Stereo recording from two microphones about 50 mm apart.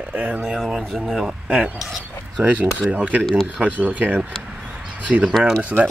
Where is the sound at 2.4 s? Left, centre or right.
Right.